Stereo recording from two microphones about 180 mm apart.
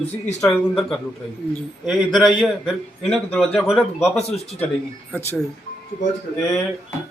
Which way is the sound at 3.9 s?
35° left (ahead or behind).